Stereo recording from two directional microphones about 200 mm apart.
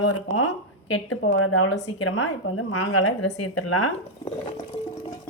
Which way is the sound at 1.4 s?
90° left.